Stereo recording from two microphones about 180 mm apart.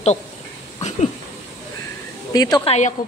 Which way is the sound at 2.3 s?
20° left (ahead or behind).